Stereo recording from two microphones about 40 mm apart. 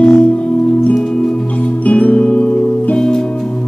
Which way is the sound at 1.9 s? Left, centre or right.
Left.